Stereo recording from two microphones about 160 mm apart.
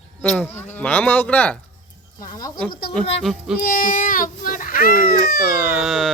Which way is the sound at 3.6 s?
65° left (ahead or behind).